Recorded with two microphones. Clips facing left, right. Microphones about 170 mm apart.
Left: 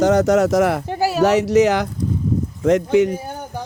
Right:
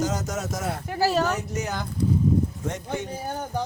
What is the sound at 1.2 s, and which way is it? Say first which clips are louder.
Speech: left 12 dB; 90° left.